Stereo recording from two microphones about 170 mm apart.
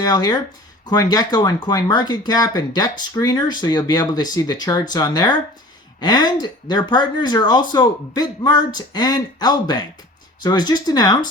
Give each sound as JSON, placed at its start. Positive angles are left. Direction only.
{"t": 0.0, "sound": "speech", "side_deg": 25}